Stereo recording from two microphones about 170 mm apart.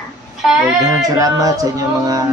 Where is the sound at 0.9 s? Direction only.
20° right (ahead or behind).